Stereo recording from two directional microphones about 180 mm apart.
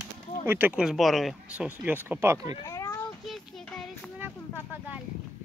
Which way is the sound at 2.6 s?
20° left (ahead or behind).